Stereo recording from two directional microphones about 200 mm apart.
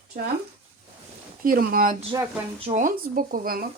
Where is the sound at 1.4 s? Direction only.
45° right (ahead or behind).